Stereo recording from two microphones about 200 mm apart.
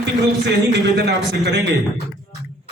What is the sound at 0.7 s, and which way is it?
Speech, 60° right (ahead or behind).